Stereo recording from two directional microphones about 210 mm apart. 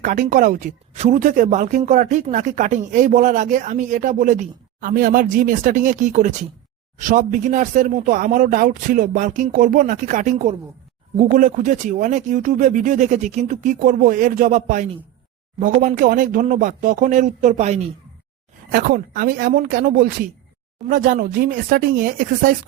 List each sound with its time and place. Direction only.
0.0 s speech: 40° right (ahead or behind)